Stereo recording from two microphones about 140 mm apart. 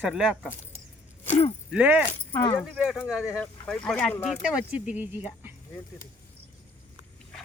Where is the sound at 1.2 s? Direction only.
45° left (ahead or behind).